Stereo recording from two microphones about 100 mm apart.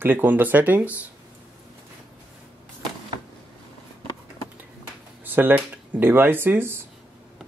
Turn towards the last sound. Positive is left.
turn(degrees=-20)  # may be behind; listen again after turning